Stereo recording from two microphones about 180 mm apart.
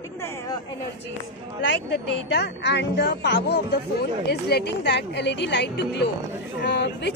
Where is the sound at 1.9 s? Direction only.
70° left (ahead or behind).